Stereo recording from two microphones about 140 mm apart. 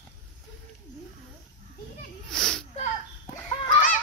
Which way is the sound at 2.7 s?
55° left (ahead or behind).